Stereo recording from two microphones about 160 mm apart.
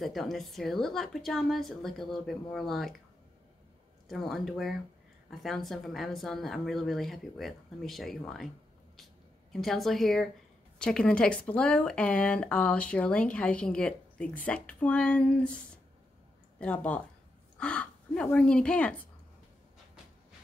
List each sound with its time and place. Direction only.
0.0 s speech: centre (ahead or behind)
4.1 s speech: centre (ahead or behind)
9.5 s speech: centre (ahead or behind)